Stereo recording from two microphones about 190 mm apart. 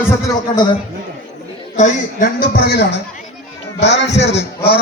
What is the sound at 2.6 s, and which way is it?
A man's voice, 60° left (ahead or behind).